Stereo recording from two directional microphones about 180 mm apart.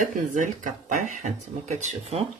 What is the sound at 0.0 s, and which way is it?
Speech, 45° right (ahead or behind).